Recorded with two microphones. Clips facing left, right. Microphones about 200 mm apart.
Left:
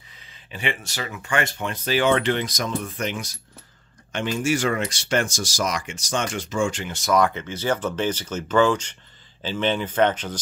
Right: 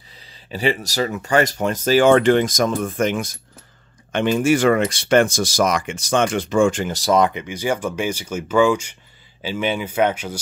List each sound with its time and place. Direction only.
0.3 s speech: 35° right (ahead or behind)
7.2 s speech: 20° right (ahead or behind)